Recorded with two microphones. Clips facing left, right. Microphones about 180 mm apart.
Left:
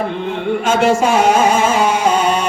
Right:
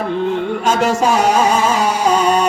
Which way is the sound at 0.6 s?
40° right (ahead or behind).